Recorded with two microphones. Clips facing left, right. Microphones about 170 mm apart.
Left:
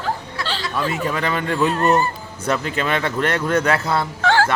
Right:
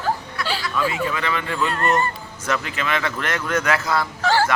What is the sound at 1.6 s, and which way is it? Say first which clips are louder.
Speech: left 4 dB; 5° left (ahead or behind).